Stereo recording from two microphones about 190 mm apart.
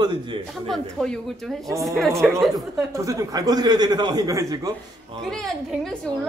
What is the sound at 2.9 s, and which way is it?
A man's voice, 15° right (ahead or behind).